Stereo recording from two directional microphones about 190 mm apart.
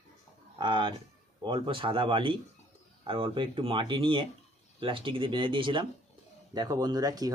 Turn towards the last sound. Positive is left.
turn(degrees=-20)  # may be behind; listen again after turning